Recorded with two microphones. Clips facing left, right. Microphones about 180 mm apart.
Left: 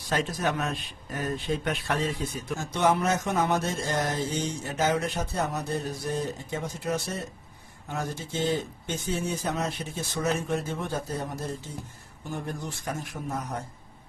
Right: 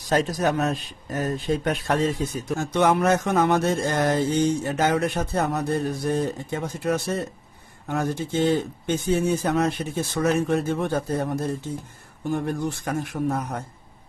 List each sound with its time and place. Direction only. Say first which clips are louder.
0.1 s a man's voice: right 6 dB; 40° right (ahead or behind); by 11.3 s 60° right (ahead or behind)
12.3 s a man's voice: right 9 dB; 60° right (ahead or behind)